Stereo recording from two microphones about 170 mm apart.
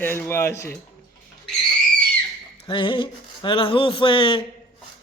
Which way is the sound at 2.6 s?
30° left (ahead or behind).